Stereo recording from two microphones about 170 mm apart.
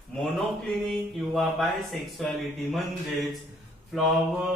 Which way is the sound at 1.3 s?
Centre (ahead or behind).